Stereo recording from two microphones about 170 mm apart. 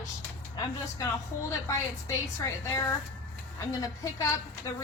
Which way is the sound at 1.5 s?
20° left (ahead or behind).